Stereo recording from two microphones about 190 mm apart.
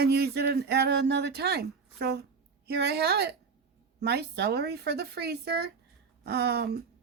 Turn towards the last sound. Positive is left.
turn(degrees=-55)  # may be behind; listen again after turning